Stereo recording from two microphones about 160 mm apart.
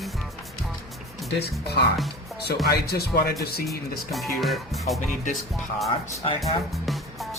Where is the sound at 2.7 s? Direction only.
80° left.